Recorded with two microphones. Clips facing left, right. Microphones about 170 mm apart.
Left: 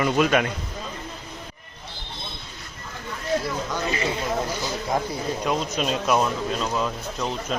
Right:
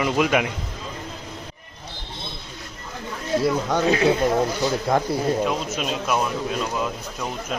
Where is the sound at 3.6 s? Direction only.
75° right (ahead or behind).